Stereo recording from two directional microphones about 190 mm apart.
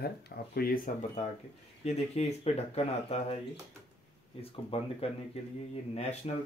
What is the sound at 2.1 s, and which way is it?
Speech, 35° left (ahead or behind).